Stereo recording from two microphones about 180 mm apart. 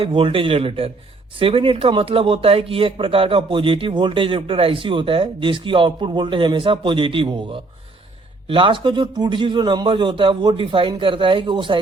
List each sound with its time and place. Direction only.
0.0 s a man's voice: 30° right (ahead or behind)